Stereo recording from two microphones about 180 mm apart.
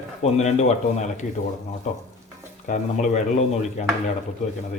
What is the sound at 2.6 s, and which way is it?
Speech, 45° left (ahead or behind).